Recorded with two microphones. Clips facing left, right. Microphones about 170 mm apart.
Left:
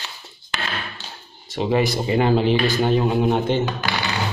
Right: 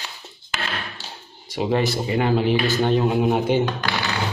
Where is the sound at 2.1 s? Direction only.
30° left (ahead or behind).